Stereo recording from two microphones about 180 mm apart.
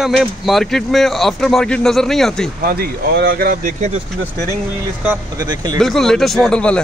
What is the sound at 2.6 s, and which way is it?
Speech, 55° right (ahead or behind).